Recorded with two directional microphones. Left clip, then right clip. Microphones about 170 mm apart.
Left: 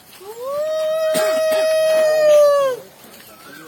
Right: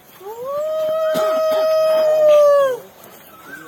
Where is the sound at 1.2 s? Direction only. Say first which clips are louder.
Even; 10° left (ahead or behind).